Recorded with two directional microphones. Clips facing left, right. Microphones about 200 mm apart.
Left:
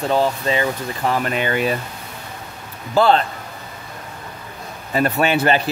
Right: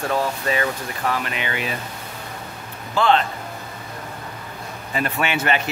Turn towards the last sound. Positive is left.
turn(degrees=35)  # may be behind; listen again after turning